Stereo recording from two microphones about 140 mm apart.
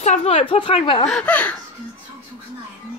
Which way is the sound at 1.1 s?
10° left (ahead or behind).